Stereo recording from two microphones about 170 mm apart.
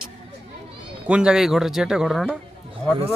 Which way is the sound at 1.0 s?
5° right (ahead or behind).